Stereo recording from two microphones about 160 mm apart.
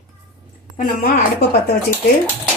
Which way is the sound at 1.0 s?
90° left.